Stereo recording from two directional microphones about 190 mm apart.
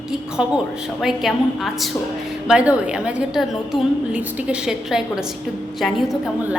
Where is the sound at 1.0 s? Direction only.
Centre (ahead or behind).